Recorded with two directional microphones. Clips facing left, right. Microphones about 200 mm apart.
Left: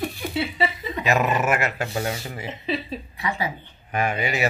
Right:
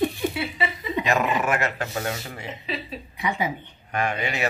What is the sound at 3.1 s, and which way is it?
Speech, 20° right (ahead or behind).